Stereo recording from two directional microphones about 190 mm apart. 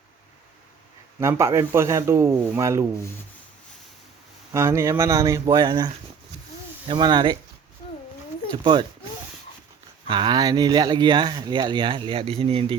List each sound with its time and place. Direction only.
1.2 s a man's voice: 15° right (ahead or behind)
4.5 s a man's voice: 15° right (ahead or behind)
10.1 s speech: 25° right (ahead or behind)